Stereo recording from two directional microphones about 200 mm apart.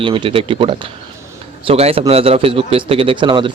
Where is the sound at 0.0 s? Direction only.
25° right (ahead or behind).